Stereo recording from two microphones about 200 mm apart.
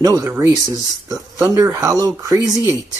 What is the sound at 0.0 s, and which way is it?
Speech, 15° right (ahead or behind).